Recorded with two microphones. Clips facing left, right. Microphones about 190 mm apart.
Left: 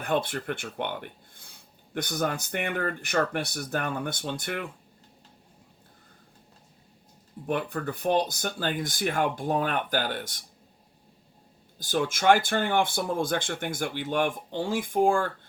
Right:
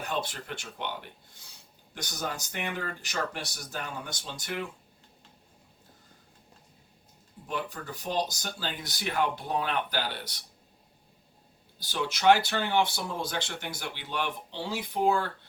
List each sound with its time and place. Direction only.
0.0 s speech: 55° left (ahead or behind)
7.4 s speech: 60° left (ahead or behind)
11.8 s speech: 50° left (ahead or behind)